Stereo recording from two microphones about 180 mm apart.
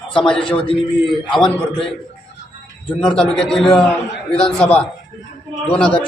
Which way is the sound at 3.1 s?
5° left (ahead or behind).